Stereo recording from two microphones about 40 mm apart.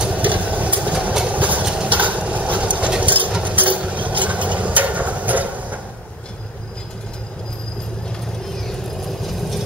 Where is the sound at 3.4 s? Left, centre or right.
Right.